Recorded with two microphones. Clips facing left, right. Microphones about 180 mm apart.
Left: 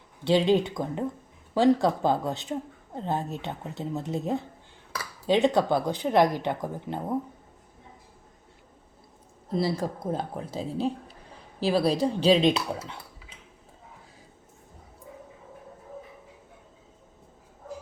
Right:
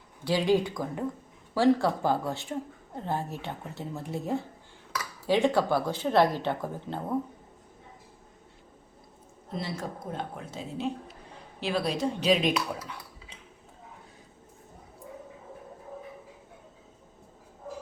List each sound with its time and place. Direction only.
0.3 s a woman's voice: 20° left (ahead or behind)
9.5 s a woman's voice: 35° left (ahead or behind)